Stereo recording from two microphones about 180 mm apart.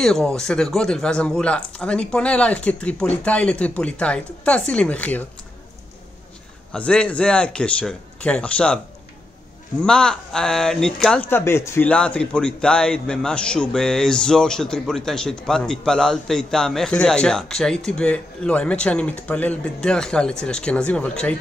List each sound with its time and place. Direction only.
0.0 s speech: 5° left (ahead or behind)
6.7 s speech: 5° left (ahead or behind)